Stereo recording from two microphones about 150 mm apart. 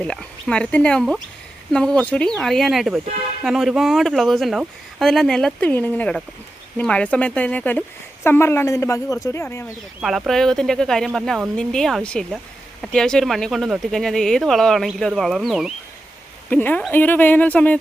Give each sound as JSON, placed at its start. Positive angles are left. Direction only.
{"t": 0.0, "sound": "speech", "side_deg": 5}
{"t": 10.0, "sound": "speech", "side_deg": 0}
{"t": 16.5, "sound": "speech", "side_deg": 10}